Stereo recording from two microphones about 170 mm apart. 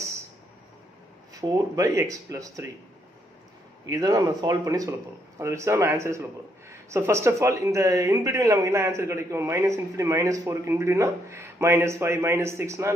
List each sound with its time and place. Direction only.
1.3 s speech: 20° right (ahead or behind)
3.8 s speech: 20° right (ahead or behind)